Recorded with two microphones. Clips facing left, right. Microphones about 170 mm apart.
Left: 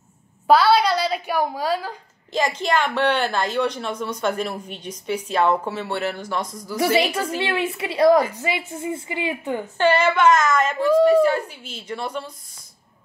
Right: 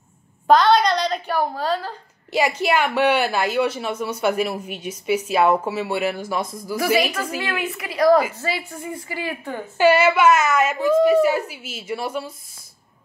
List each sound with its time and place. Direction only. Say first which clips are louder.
0.5 s a woman's voice: right 1 dB; 5° left (ahead or behind)
2.3 s a woman's voice: right 2 dB; 10° right (ahead or behind)
7.3 s a woman's voice: left 3 dB; 30° left (ahead or behind)
9.8 s a woman's voice: right 3 dB; 10° right (ahead or behind)